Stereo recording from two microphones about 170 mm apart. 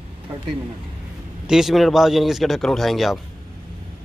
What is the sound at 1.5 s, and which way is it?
Speech, centre (ahead or behind).